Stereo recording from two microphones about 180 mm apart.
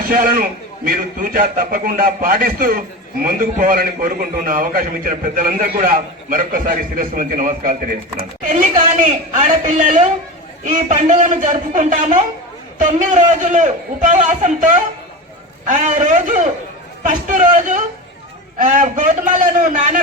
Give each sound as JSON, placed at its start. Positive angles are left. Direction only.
{"t": 0.1, "sound": "a man's voice", "side_deg": -50}
{"t": 9.0, "sound": "a man's voice", "side_deg": -45}
{"t": 15.6, "sound": "a man's voice", "side_deg": -45}